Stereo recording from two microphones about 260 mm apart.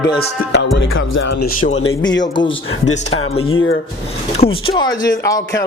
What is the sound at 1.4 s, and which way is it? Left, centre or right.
Speech, left.